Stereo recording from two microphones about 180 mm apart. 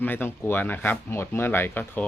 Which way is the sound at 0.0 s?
10° left (ahead or behind).